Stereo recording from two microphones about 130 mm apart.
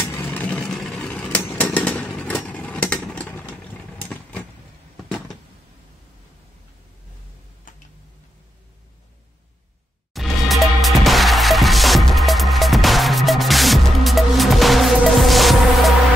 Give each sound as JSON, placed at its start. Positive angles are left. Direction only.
{"t": 0.0, "sound": "vehicle", "side_deg": 15}
{"t": 7.7, "sound": "tick-tock", "side_deg": 90}
{"t": 10.1, "sound": "music", "side_deg": 0}